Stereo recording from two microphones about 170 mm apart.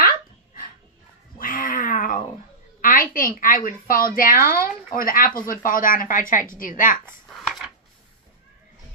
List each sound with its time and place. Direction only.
1.4 s cat: 55° left (ahead or behind)
2.8 s a woman's voice: 55° left (ahead or behind)
7.2 s a sound: 5° left (ahead or behind)